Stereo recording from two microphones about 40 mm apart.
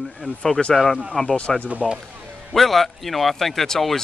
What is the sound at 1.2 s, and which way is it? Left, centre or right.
Speech, left.